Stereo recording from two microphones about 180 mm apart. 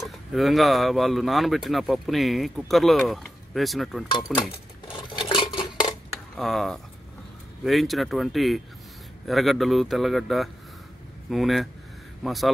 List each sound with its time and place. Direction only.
0.0 s speech: centre (ahead or behind)
4.4 s dishes: 25° left (ahead or behind)
6.3 s speech: centre (ahead or behind)